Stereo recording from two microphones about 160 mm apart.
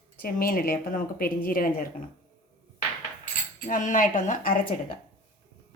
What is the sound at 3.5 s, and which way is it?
A woman's voice, 55° left (ahead or behind).